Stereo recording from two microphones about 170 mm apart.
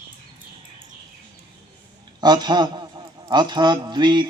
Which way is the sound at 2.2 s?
25° right (ahead or behind).